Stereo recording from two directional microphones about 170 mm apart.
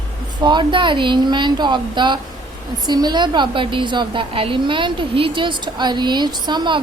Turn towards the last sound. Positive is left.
turn(degrees=-25)  # may be behind; listen again after turning